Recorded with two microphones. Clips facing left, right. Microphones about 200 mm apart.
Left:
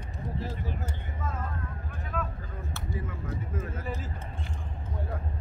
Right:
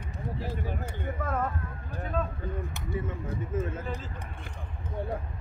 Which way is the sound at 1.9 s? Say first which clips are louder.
Right 5 dB; 30° right (ahead or behind).